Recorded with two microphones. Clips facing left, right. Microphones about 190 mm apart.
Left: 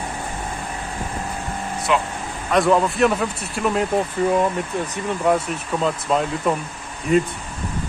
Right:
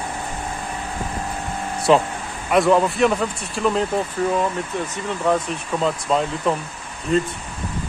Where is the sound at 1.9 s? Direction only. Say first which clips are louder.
Right 6 dB; 35° right (ahead or behind).